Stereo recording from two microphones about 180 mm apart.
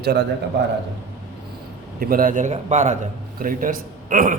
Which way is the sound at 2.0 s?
55° right (ahead or behind).